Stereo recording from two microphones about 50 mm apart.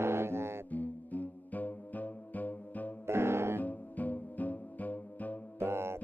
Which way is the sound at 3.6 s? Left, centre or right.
Left.